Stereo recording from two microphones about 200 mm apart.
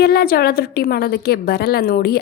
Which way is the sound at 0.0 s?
50° left (ahead or behind).